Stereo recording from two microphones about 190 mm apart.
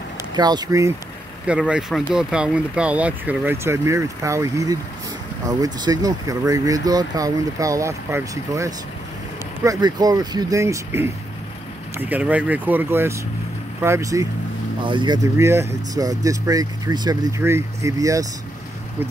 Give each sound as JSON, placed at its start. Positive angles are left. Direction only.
{"t": 0.4, "sound": "speech", "side_deg": -20}
{"t": 1.5, "sound": "speech", "side_deg": -5}